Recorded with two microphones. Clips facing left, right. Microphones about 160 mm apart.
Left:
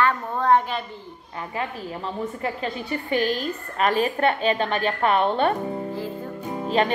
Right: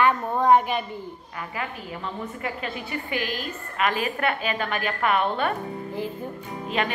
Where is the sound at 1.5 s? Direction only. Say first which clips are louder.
Left 4 dB; 35° left (ahead or behind).